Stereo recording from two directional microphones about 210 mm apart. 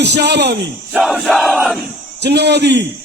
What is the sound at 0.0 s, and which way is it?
Speech, 55° right (ahead or behind).